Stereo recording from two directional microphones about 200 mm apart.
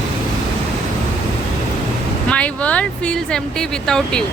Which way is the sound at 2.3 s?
5° left (ahead or behind).